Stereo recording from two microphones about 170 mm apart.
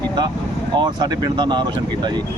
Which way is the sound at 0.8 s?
25° right (ahead or behind).